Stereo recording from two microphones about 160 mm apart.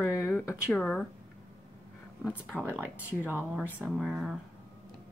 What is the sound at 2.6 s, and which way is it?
Speech, 10° right (ahead or behind).